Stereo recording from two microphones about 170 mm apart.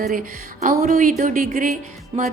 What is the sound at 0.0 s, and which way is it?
Speech, 55° right (ahead or behind).